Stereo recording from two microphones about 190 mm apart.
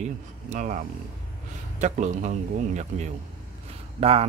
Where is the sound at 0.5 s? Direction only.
40° right (ahead or behind).